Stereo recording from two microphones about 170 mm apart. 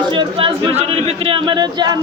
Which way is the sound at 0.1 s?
30° right (ahead or behind).